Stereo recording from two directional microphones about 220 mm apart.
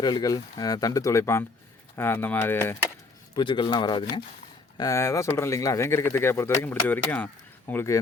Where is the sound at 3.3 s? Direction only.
20° left (ahead or behind).